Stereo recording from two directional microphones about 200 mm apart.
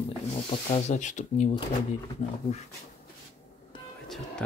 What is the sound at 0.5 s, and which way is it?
Speech, 30° left (ahead or behind).